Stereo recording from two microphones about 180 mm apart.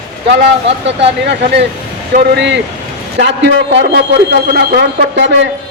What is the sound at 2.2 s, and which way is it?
A man's voice, 70° right (ahead or behind).